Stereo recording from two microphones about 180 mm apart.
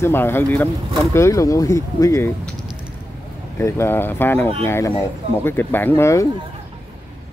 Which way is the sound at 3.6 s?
15° left (ahead or behind).